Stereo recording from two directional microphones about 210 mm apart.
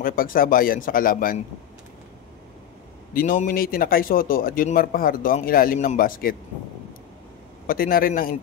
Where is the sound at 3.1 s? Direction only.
40° left (ahead or behind).